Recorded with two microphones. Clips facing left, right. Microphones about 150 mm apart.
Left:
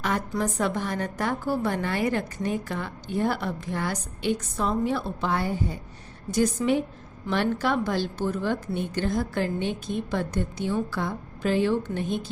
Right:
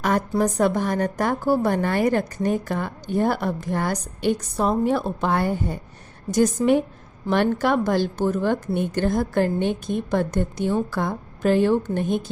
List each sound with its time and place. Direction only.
0.0 s a woman's voice: 45° right (ahead or behind)
6.3 s a woman's voice: 45° right (ahead or behind)